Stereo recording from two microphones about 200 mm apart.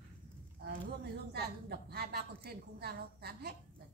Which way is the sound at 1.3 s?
50° right (ahead or behind).